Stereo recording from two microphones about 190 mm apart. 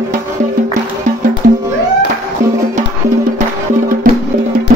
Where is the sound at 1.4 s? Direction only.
45° right (ahead or behind).